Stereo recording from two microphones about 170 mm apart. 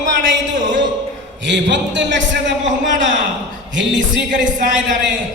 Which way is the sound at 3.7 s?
90° right.